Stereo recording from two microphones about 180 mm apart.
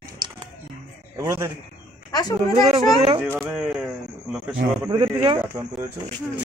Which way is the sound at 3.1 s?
10° right (ahead or behind).